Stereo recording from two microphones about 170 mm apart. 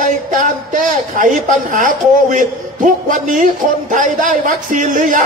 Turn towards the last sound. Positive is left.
turn(degrees=-50)  # may be behind; listen again after turning